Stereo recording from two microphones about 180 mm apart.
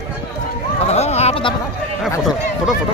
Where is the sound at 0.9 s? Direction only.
35° left (ahead or behind).